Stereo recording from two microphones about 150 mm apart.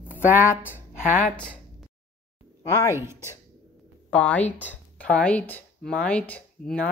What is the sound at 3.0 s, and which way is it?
Speech, 15° right (ahead or behind).